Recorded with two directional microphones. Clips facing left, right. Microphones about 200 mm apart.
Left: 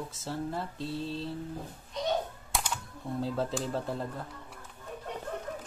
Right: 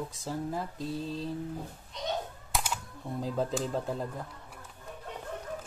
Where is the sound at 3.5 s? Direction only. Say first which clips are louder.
Right 1 dB; centre (ahead or behind).